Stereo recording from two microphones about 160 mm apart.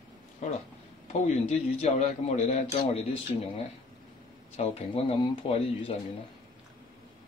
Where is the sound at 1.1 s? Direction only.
45° left (ahead or behind).